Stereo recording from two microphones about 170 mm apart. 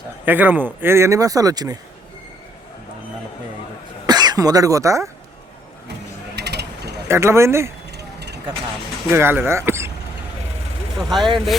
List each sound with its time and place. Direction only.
0.3 s speech: 10° right (ahead or behind)
4.0 s speech: 25° right (ahead or behind)
6.3 s mechanisms: 75° right (ahead or behind)
7.1 s speech: 15° right (ahead or behind)
7.9 s vehicle: 75° right (ahead or behind)
9.0 s speech: 15° right (ahead or behind)
11.1 s speech: centre (ahead or behind)